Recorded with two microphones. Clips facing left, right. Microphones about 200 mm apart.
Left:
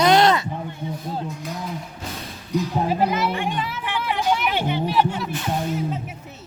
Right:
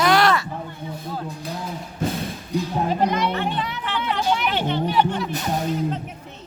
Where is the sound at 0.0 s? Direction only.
20° left (ahead or behind).